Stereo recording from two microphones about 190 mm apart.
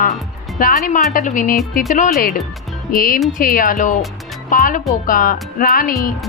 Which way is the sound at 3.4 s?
45° left (ahead or behind).